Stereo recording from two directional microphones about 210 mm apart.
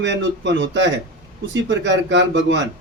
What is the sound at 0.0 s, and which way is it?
Speech, 60° right (ahead or behind).